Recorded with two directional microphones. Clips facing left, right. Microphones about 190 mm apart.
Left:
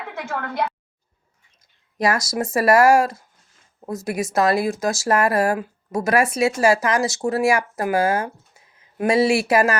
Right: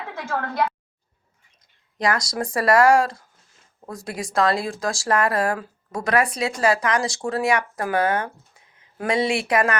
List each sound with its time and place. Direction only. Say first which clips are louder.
2.0 s speech: left 2 dB; 25° left (ahead or behind)